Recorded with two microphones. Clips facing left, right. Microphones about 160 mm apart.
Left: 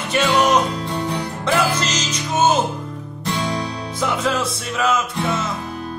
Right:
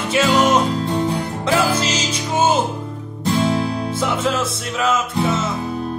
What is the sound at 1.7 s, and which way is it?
Music, 10° right (ahead or behind).